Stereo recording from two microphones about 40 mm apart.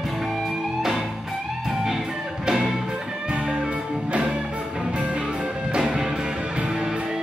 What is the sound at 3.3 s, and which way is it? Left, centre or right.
Music, right.